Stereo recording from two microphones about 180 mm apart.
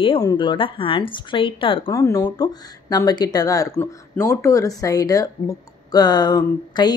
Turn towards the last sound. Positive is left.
turn(degrees=25)  # may be behind; listen again after turning